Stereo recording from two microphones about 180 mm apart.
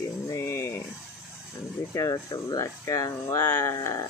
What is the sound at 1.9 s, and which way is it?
Speech, 20° left (ahead or behind).